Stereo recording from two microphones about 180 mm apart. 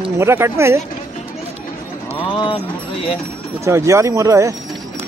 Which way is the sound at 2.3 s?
25° left (ahead or behind).